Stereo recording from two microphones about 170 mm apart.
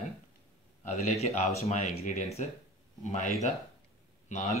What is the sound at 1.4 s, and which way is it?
Speech, 40° left (ahead or behind).